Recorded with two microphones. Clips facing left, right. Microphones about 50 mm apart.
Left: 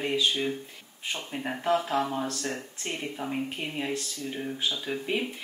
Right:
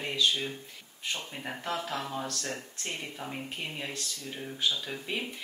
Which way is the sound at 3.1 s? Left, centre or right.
Centre.